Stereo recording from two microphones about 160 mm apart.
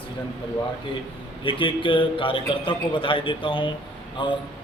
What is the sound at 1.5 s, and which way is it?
A man's voice, 30° left (ahead or behind).